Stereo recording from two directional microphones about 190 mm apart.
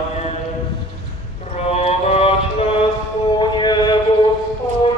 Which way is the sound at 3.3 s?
25° left (ahead or behind).